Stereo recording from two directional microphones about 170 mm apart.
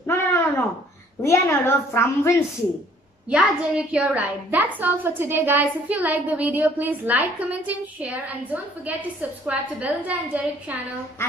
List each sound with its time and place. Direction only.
0.0 s a sound: 15° left (ahead or behind)
1.2 s a woman's voice: 15° left (ahead or behind)
3.3 s a woman's voice: 5° right (ahead or behind)